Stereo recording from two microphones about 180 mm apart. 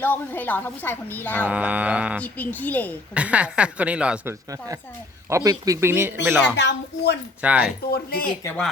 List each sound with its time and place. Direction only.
0.0 s a woman's voice: 10° left (ahead or behind)
1.5 s speech: 10° right (ahead or behind)
2.2 s a woman's voice: 10° left (ahead or behind)
3.2 s speech: 5° right (ahead or behind)
5.3 s speech: 20° right (ahead or behind)
6.6 s speech: 70° left (ahead or behind)
7.4 s speech: 10° right (ahead or behind)
7.9 s speech: 55° left (ahead or behind)
8.4 s speech: 5° left (ahead or behind)